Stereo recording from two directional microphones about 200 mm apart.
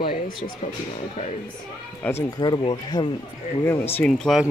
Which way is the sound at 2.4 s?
20° left (ahead or behind).